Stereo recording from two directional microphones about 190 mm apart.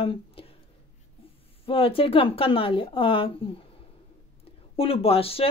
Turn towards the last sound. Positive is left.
turn(degrees=30)  # may be behind; listen again after turning